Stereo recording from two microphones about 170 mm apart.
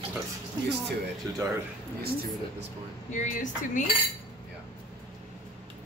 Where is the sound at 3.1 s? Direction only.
45° left (ahead or behind).